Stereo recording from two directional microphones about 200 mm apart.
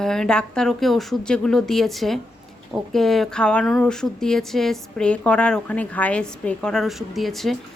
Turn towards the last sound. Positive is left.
turn(degrees=0)  # may be behind; listen again after turning